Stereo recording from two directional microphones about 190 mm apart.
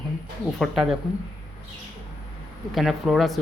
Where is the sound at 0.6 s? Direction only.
Centre (ahead or behind).